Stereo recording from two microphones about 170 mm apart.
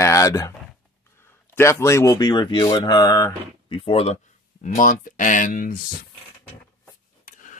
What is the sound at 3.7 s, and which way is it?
Speech, 30° left (ahead or behind).